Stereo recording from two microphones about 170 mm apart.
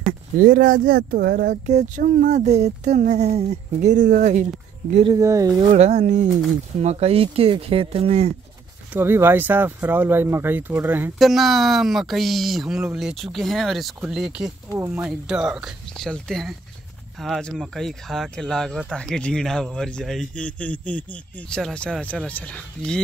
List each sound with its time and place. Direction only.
0.7 s speech: 55° right (ahead or behind)
1.7 s a sound: 45° right (ahead or behind)
5.0 s speech: 20° right (ahead or behind)
5.7 s a sound: 40° right (ahead or behind)
6.8 s speech: 40° right (ahead or behind)
8.9 s speech: 15° right (ahead or behind)
11.1 s speech: centre (ahead or behind)